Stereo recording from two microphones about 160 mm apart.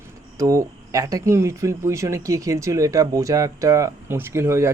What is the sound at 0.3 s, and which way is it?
Speech, 20° right (ahead or behind).